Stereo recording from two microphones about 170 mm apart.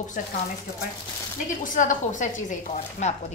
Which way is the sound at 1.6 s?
50° left (ahead or behind).